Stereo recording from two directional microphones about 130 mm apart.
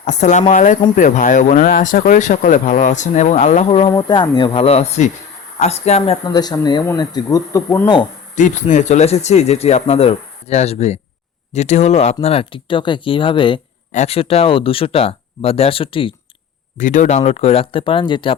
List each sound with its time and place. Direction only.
0.0 s speech: 65° left (ahead or behind)
3.7 s speech: 45° left (ahead or behind)
3.9 s speech: 35° left (ahead or behind); by 6.1 s 55° left (ahead or behind)
6.2 s speech: 30° left (ahead or behind)
8.4 s speech: 70° left (ahead or behind); by 13.6 s 40° left (ahead or behind)
13.9 s speech: 55° left (ahead or behind)
16.7 s speech: 80° left; by 18.3 s 40° left (ahead or behind)